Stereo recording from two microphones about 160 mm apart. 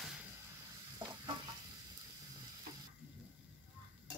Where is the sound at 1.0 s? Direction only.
25° right (ahead or behind).